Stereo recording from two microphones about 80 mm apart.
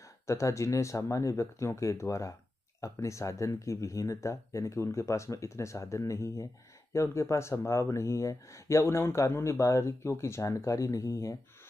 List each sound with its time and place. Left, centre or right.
0.3 s speech: left